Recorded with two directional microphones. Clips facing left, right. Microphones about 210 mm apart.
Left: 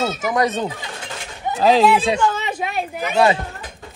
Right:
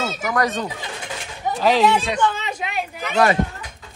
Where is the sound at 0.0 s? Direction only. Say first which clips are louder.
Left 3 dB; 25° left (ahead or behind).